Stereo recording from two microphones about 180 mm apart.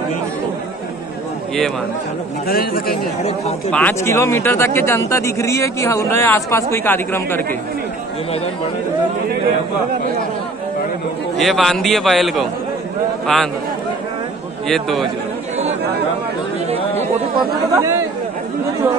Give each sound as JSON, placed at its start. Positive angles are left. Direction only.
{"t": 2.4, "sound": "a man's voice", "side_deg": 55}
{"t": 3.3, "sound": "speech", "side_deg": 35}
{"t": 3.7, "sound": "speech", "side_deg": 10}
{"t": 11.3, "sound": "a man's voice", "side_deg": 0}
{"t": 14.7, "sound": "a man's voice", "side_deg": 0}
{"t": 17.7, "sound": "speech", "side_deg": -15}